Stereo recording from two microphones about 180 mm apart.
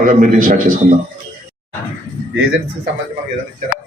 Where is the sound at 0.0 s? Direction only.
50° right (ahead or behind).